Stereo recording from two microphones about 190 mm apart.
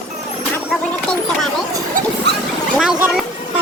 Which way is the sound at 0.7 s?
Centre (ahead or behind).